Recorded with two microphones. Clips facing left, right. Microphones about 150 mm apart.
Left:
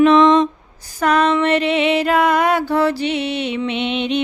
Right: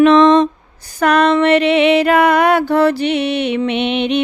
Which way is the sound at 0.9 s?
70° right (ahead or behind).